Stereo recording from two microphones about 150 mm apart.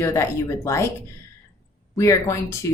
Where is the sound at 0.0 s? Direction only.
20° left (ahead or behind).